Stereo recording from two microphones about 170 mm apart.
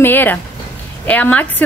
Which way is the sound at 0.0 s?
10° left (ahead or behind).